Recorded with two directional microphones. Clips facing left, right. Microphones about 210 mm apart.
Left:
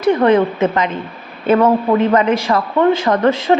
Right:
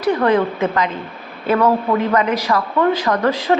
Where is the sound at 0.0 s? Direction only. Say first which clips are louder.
Left 4 dB; 25° left (ahead or behind).